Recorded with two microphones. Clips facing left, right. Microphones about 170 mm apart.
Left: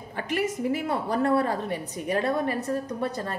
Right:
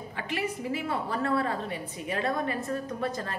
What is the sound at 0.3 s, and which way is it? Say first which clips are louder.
A woman's voice: left 5 dB; 45° left (ahead or behind).